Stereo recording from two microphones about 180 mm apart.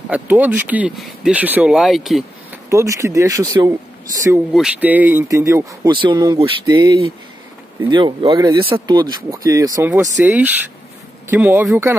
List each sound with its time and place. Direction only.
0.1 s speech: 10° right (ahead or behind)
2.7 s speech: 15° right (ahead or behind)
4.6 s speech: 5° right (ahead or behind)